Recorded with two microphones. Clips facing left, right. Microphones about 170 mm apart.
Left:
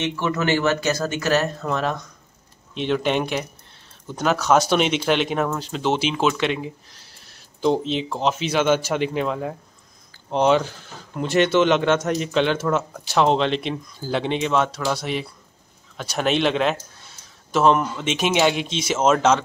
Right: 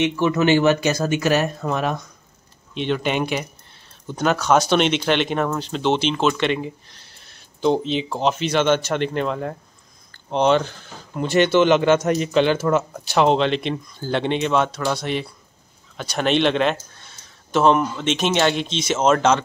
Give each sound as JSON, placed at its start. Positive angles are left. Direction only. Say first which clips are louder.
{"t": 0.0, "sound": "speech", "louder": "right 5 dB", "side_deg": -15}
{"t": 2.7, "sound": "speech", "louder": "left 1 dB", "side_deg": 0}